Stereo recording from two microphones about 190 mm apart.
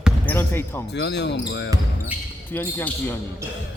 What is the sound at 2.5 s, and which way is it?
Speech, 10° left (ahead or behind).